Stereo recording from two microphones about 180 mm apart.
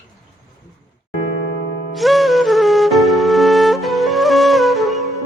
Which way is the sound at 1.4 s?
75° left (ahead or behind).